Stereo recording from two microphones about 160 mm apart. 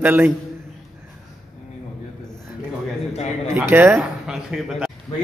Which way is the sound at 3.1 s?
40° left (ahead or behind).